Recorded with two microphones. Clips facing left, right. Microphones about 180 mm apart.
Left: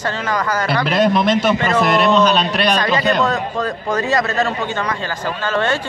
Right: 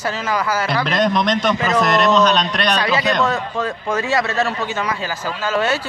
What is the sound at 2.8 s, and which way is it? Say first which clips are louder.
Speech: left 1 dB; 5° right (ahead or behind).